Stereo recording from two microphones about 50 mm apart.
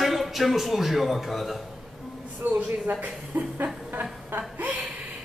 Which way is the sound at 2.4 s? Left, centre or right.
Right.